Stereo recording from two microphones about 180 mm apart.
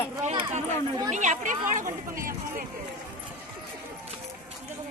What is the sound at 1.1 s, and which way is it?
Speech, 45° right (ahead or behind).